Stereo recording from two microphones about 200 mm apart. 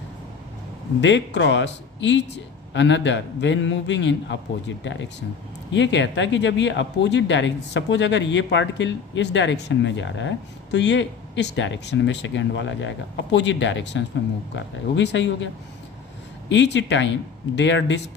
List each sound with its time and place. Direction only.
1.0 s speech: 65° left (ahead or behind)
16.7 s speech: 65° left (ahead or behind)